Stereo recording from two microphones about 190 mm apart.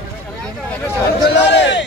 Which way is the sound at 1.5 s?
70° left (ahead or behind).